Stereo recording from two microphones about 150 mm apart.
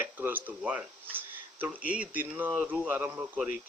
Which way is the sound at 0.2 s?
10° right (ahead or behind).